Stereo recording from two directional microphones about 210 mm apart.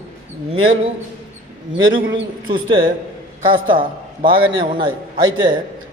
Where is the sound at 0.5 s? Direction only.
75° right (ahead or behind).